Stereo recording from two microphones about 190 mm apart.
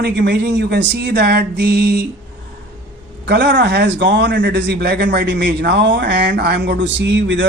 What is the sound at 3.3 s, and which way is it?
A man's voice, 65° right (ahead or behind).